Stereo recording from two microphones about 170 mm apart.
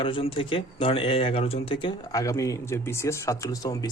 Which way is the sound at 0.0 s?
30° left (ahead or behind).